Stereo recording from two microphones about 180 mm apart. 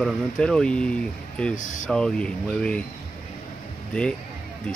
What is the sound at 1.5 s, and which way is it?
Speech, 45° left (ahead or behind).